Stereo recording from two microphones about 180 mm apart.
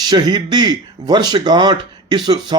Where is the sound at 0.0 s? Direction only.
25° right (ahead or behind).